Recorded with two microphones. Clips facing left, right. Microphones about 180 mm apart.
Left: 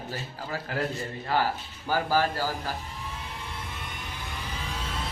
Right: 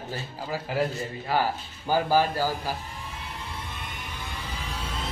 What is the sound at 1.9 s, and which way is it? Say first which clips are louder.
Speech: right 3 dB; 15° right (ahead or behind).